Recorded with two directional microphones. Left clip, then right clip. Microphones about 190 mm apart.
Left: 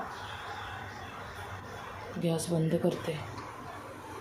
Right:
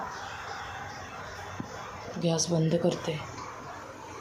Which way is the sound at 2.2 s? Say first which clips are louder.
Right 4 dB; 5° left (ahead or behind).